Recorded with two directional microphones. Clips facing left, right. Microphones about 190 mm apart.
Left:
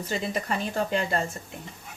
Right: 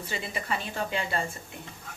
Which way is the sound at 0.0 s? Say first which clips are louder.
Left 6 dB; 45° left (ahead or behind).